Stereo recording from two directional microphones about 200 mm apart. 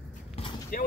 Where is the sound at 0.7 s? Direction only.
45° left (ahead or behind).